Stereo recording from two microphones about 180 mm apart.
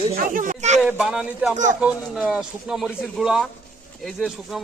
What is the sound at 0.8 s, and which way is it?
Speech, 5° right (ahead or behind).